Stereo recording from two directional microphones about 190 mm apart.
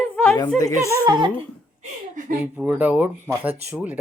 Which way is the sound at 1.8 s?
45° right (ahead or behind).